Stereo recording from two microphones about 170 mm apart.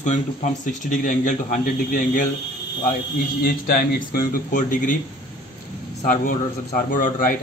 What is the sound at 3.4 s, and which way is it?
A man's voice, 60° left (ahead or behind).